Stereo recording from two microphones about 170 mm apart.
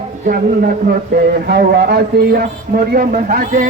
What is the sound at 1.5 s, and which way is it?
Speech, 70° right (ahead or behind).